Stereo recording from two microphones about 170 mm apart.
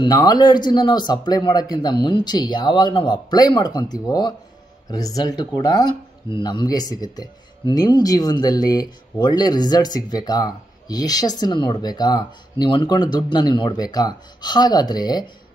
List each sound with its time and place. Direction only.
0.0 s speech: 25° left (ahead or behind)